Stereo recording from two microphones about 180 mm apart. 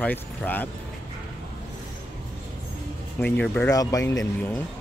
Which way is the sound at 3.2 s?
10° left (ahead or behind).